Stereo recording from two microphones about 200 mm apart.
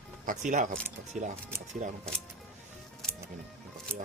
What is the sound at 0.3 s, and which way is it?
Speech, 40° right (ahead or behind).